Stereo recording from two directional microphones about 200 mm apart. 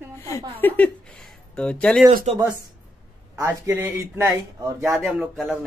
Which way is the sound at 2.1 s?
40° right (ahead or behind).